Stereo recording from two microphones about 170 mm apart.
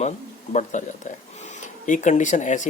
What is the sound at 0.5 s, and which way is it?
Speech, 45° left (ahead or behind).